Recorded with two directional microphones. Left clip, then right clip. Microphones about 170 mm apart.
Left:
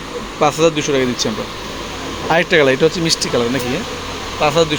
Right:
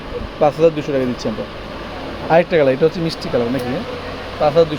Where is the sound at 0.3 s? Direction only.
Centre (ahead or behind).